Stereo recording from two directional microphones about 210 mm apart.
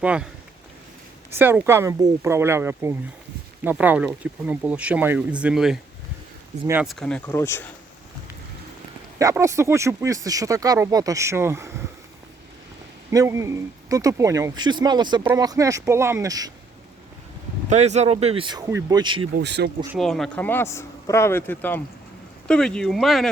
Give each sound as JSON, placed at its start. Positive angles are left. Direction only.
{"t": 0.0, "sound": "speech", "side_deg": -5}
{"t": 1.3, "sound": "speech", "side_deg": -10}
{"t": 7.0, "sound": "speech", "side_deg": 10}
{"t": 9.1, "sound": "speech", "side_deg": -15}
{"t": 13.1, "sound": "speech", "side_deg": -15}
{"t": 17.7, "sound": "speech", "side_deg": -30}
{"t": 19.4, "sound": "speech", "side_deg": -55}
{"t": 20.0, "sound": "speech", "side_deg": 0}